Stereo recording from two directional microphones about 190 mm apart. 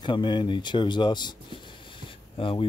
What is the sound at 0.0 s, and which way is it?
Speech, 25° left (ahead or behind).